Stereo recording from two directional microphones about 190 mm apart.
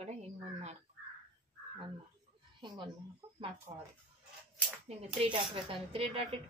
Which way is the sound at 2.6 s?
25° right (ahead or behind).